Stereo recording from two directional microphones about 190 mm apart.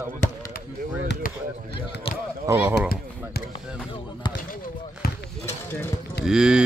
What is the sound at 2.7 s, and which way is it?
Speech, 55° left (ahead or behind).